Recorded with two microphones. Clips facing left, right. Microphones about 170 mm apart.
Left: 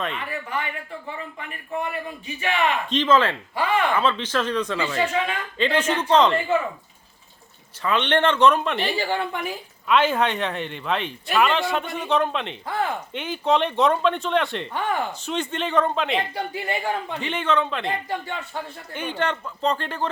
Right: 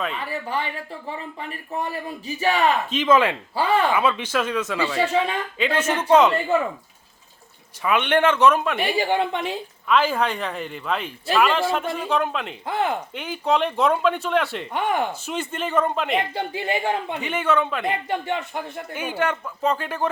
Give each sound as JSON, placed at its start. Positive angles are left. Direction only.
{"t": 0.2, "sound": "a man's voice", "side_deg": -30}
{"t": 2.9, "sound": "a man's voice", "side_deg": -10}
{"t": 3.5, "sound": "a man's voice", "side_deg": -30}
{"t": 3.9, "sound": "a man's voice", "side_deg": -10}
{"t": 4.9, "sound": "a man's voice", "side_deg": -30}
{"t": 5.5, "sound": "a man's voice", "side_deg": -5}
{"t": 7.8, "sound": "a man's voice", "side_deg": -10}
{"t": 9.8, "sound": "speech", "side_deg": 0}
{"t": 12.6, "sound": "speech", "side_deg": -20}
{"t": 13.1, "sound": "speech", "side_deg": 0}
{"t": 14.7, "sound": "a man's voice", "side_deg": -15}
{"t": 16.3, "sound": "speech", "side_deg": -25}
{"t": 17.2, "sound": "a man's voice", "side_deg": -5}
{"t": 17.8, "sound": "a man's voice", "side_deg": -20}